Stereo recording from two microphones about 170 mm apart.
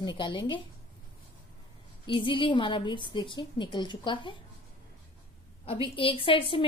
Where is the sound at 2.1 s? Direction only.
30° left (ahead or behind).